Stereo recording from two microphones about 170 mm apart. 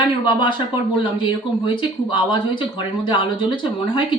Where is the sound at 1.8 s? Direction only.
30° left (ahead or behind).